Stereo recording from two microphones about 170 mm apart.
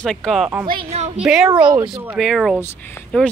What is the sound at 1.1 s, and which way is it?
Speech, 5° right (ahead or behind).